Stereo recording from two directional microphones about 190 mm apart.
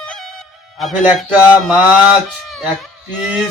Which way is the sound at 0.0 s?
Centre (ahead or behind).